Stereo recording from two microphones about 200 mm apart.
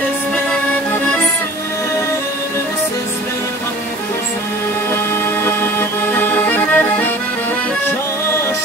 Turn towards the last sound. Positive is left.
turn(degrees=10)  # may be behind; listen again after turning